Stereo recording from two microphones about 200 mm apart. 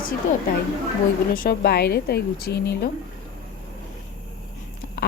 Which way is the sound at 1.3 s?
45° left (ahead or behind).